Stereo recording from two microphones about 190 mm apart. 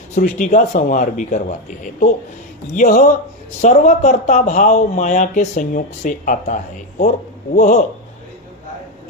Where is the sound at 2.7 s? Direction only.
40° left (ahead or behind).